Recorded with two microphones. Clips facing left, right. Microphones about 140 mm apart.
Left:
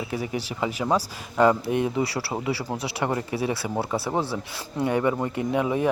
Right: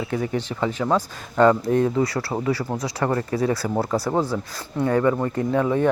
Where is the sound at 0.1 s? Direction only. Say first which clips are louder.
Right 4 dB; 10° left (ahead or behind).